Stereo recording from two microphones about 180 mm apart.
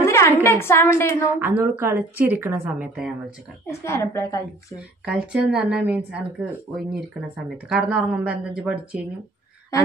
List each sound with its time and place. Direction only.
0.0 s a woman's voice: 15° left (ahead or behind)
1.6 s a woman's voice: 10° right (ahead or behind)
3.8 s a woman's voice: 15° left (ahead or behind)
4.7 s speech: 5° right (ahead or behind)